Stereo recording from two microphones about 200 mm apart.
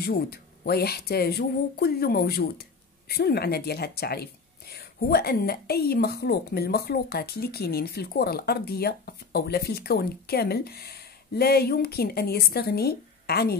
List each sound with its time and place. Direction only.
0.0 s speech: 50° left (ahead or behind)